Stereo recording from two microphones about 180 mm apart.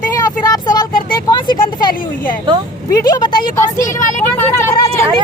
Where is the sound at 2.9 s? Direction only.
20° left (ahead or behind).